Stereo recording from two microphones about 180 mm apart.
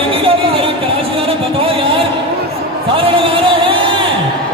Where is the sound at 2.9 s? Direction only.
30° right (ahead or behind).